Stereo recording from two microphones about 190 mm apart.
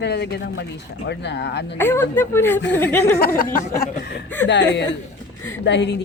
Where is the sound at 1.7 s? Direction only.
10° left (ahead or behind).